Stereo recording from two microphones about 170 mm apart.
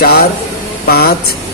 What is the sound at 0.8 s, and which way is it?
Speech, 65° left (ahead or behind).